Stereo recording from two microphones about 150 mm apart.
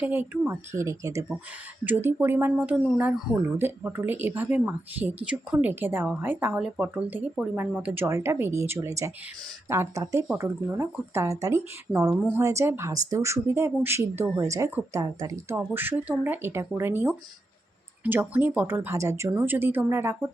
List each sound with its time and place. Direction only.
0.0 s speech: 10° right (ahead or behind)